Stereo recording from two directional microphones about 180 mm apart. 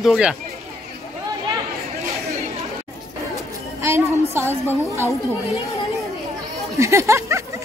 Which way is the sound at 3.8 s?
15° right (ahead or behind).